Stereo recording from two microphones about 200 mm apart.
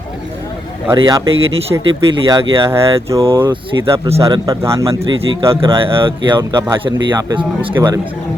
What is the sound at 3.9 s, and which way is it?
Speech, 25° right (ahead or behind).